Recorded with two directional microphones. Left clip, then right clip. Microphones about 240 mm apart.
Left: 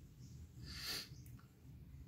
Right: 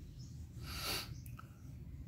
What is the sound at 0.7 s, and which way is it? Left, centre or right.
Snort, centre.